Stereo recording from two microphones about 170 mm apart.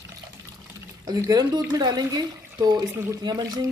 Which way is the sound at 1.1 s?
25° right (ahead or behind).